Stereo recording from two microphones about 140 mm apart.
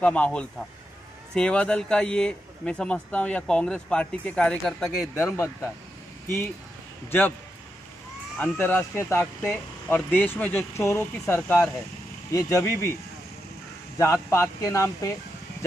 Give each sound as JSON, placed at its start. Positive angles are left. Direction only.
{"t": 0.0, "sound": "speech", "side_deg": 10}
{"t": 5.2, "sound": "speech", "side_deg": 20}
{"t": 8.4, "sound": "speech", "side_deg": 10}
{"t": 13.9, "sound": "speech", "side_deg": 20}